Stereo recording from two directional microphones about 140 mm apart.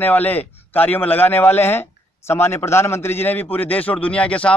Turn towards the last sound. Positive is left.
turn(degrees=10)  # may be behind; listen again after turning